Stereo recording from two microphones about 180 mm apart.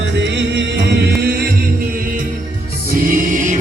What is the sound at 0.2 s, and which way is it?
Music, 75° right (ahead or behind).